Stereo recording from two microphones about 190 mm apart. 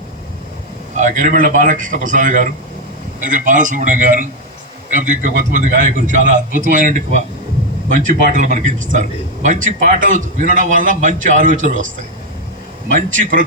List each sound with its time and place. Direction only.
0.9 s a man's voice: 40° right (ahead or behind)